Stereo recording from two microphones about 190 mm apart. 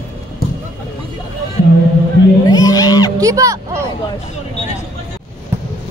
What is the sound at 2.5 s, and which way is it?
Crowd, 20° left (ahead or behind).